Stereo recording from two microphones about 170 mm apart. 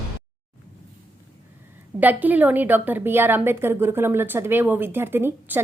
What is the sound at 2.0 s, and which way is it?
A woman's voice, 10° right (ahead or behind).